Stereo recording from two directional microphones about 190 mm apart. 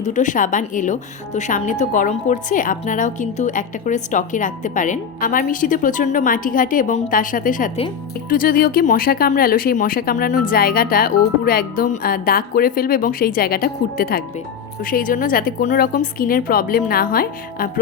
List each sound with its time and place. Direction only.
0.0 s a woman's voice: 40° left (ahead or behind)